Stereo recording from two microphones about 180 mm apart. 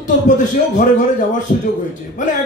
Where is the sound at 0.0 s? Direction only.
45° left (ahead or behind).